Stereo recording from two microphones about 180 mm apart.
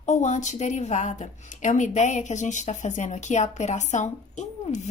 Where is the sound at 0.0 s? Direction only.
40° left (ahead or behind).